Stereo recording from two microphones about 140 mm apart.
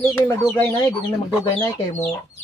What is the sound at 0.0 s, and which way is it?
Speech, 25° left (ahead or behind).